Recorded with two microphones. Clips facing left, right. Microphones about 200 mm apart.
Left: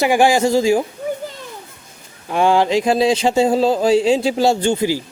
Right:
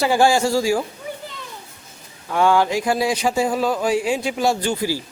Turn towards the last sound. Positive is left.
turn(degrees=20)  # may be behind; listen again after turning